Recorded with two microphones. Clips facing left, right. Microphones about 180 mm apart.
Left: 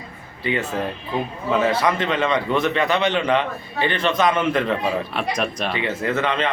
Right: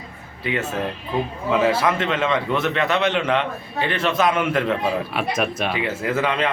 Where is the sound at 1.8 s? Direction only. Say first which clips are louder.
Even; centre (ahead or behind).